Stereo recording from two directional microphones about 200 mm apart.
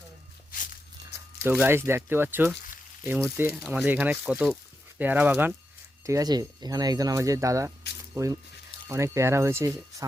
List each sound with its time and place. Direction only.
0.5 s walk: 40° left (ahead or behind)
1.4 s speech: 10° right (ahead or behind)